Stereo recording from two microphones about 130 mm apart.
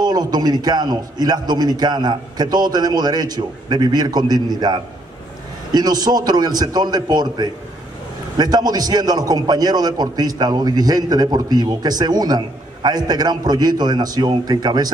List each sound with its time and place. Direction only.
0.0 s a man's voice: 30° right (ahead or behind)